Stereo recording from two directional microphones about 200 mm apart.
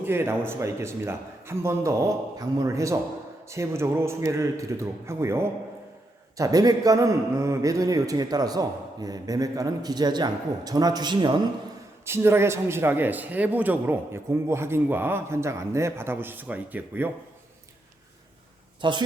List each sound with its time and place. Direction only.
0.0 s a man's voice: 10° right (ahead or behind)
18.8 s speech: 25° right (ahead or behind)